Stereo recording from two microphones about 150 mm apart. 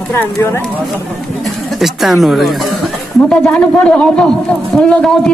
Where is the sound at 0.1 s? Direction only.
15° left (ahead or behind).